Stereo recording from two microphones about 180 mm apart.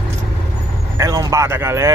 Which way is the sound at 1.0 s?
20° right (ahead or behind).